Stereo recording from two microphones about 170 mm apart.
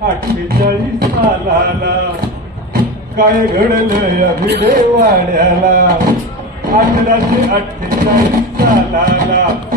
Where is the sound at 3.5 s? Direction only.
65° right (ahead or behind).